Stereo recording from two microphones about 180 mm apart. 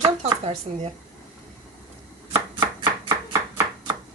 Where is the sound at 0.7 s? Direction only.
35° right (ahead or behind).